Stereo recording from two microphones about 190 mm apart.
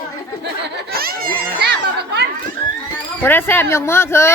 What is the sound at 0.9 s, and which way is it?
Children playing, 50° right (ahead or behind).